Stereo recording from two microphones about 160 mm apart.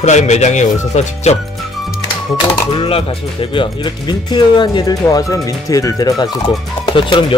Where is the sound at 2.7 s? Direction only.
35° left (ahead or behind).